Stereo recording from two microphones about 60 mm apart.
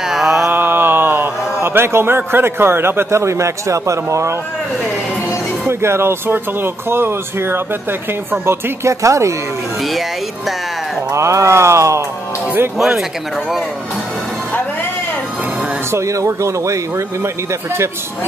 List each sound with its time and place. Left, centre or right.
0.0 s mantra: centre
0.5 s a man's voice: right
5.7 s speech: right
11.1 s speech: right
12.7 s speech: centre
15.9 s speech: right